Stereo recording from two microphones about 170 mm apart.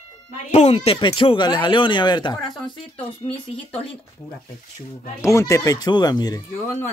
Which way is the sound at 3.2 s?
35° left (ahead or behind).